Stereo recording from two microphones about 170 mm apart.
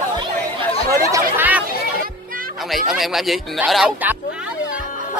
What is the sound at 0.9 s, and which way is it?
Chatter, 15° right (ahead or behind).